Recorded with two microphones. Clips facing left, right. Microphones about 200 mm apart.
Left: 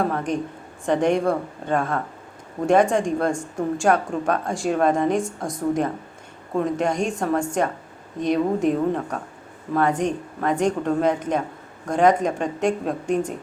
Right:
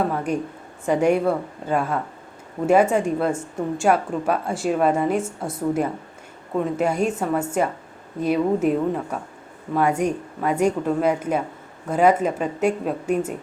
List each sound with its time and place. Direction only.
0.0 s a woman's voice: 5° right (ahead or behind)